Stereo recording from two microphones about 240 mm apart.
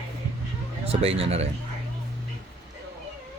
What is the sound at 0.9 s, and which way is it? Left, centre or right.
Speech, right.